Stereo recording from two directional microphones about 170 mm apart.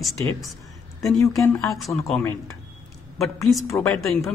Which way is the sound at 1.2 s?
20° left (ahead or behind).